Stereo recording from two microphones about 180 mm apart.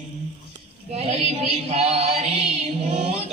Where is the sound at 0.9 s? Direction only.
35° right (ahead or behind).